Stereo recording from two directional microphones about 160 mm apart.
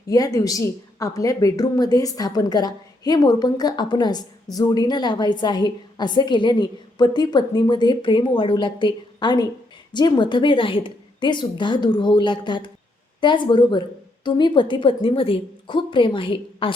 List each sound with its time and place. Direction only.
0.1 s a woman's voice: 20° left (ahead or behind)